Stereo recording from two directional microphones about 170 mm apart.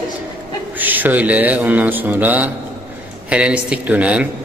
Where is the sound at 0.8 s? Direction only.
10° right (ahead or behind).